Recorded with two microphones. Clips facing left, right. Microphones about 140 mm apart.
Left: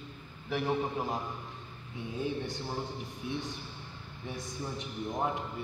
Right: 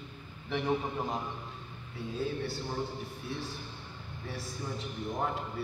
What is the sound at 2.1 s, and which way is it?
Speech, 20° left (ahead or behind).